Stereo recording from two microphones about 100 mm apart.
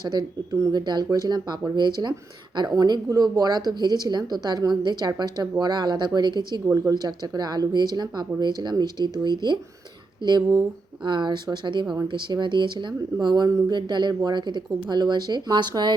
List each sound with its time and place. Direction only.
0.0 s speech: 45° right (ahead or behind)